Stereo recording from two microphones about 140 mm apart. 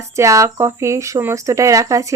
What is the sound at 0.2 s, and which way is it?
Speech, 20° right (ahead or behind).